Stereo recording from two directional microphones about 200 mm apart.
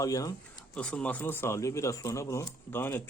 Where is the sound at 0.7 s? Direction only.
5° left (ahead or behind).